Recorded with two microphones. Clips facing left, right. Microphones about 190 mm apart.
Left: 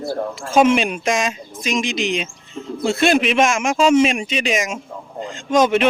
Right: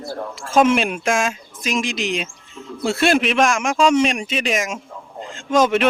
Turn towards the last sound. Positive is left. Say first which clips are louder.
# left 1 dB
turn(degrees=0)  # may be behind; listen again after turning